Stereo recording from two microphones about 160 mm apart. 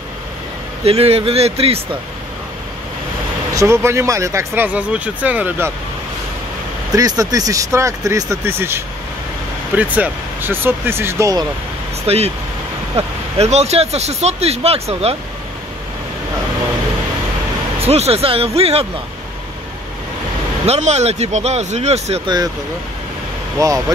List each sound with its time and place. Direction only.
0.8 s speech: 40° right (ahead or behind)
3.5 s speech: 15° right (ahead or behind)
6.9 s speech: 20° right (ahead or behind)
12.1 s speech: 40° right (ahead or behind)
17.7 s speech: 40° right (ahead or behind)
20.6 s speech: 40° right (ahead or behind)
23.6 s speech: 20° right (ahead or behind)